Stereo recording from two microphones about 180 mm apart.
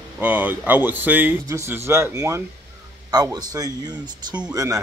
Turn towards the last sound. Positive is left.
turn(degrees=-20)  # may be behind; listen again after turning